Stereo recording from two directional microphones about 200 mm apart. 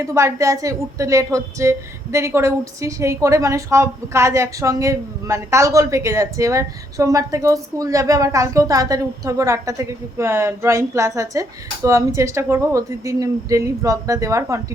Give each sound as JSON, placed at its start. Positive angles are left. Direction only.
{"t": 0.0, "sound": "speech", "side_deg": -15}